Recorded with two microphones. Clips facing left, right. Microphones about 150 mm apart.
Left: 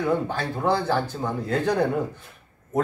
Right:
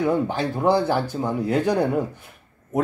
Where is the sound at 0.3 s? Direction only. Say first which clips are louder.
Right 4 dB; 15° right (ahead or behind).